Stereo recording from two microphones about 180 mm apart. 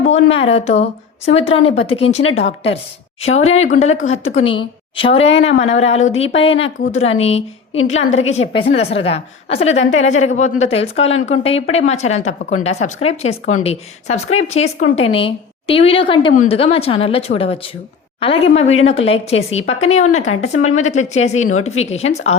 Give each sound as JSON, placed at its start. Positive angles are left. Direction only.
{"t": 0.5, "sound": "a woman's voice", "side_deg": 35}